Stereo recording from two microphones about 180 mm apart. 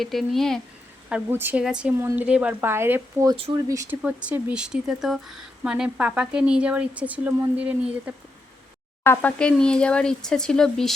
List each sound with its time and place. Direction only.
0.0 s speech: centre (ahead or behind)
1.1 s speech: 10° right (ahead or behind)
4.0 s speech: 5° right (ahead or behind)
9.0 s speech: 5° left (ahead or behind)